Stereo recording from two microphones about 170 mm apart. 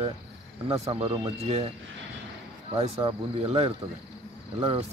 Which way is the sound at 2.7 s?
35° right (ahead or behind).